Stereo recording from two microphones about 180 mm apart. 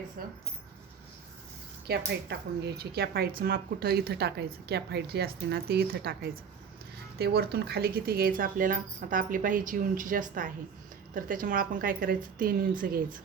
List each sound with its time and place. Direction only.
0.2 s speech: 55° right (ahead or behind)
1.9 s speech: 65° right (ahead or behind)
7.2 s speech: 60° right (ahead or behind)